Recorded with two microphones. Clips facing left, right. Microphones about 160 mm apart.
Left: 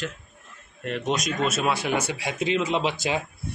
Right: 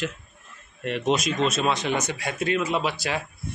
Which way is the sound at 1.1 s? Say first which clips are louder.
Right 2 dB; centre (ahead or behind).